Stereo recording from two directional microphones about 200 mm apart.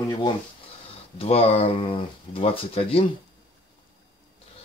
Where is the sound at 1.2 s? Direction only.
30° left (ahead or behind).